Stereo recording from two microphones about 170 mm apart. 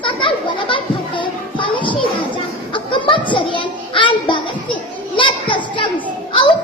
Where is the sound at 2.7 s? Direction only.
30° left (ahead or behind).